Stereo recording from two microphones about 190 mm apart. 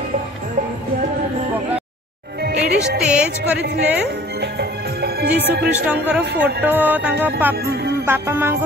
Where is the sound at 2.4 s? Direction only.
55° right (ahead or behind).